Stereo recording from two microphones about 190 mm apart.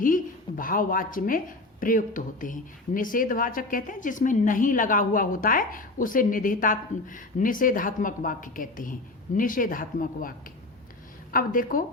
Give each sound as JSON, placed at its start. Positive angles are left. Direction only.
{"t": 0.0, "sound": "a woman's voice", "side_deg": 45}